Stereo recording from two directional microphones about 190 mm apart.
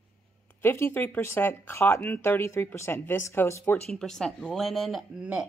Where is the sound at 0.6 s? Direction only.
10° left (ahead or behind).